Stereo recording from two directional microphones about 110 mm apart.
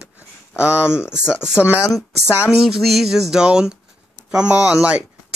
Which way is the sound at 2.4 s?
10° right (ahead or behind).